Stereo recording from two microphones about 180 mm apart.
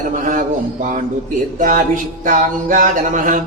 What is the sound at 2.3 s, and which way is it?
Speech, 45° right (ahead or behind).